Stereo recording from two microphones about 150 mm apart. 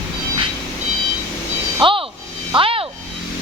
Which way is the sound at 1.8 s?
35° right (ahead or behind).